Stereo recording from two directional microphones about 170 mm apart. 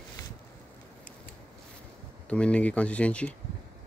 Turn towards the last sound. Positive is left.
turn(degrees=5)  # may be behind; listen again after turning